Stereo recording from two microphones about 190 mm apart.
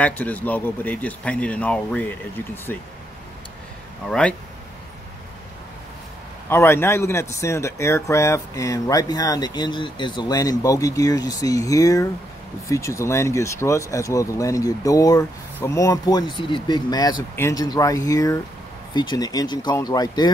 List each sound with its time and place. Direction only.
0.0 s speech: 10° left (ahead or behind)
4.1 s speech: 5° left (ahead or behind)
6.5 s speech: 10° left (ahead or behind)